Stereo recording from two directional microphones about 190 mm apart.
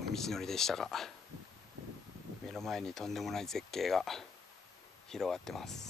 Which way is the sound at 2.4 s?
Centre (ahead or behind).